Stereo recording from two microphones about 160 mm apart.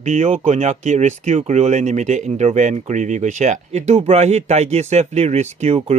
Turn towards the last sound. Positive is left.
turn(degrees=-40)  # may be behind; listen again after turning